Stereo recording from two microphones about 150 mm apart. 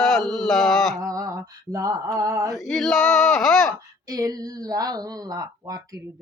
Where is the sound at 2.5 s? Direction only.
5° left (ahead or behind).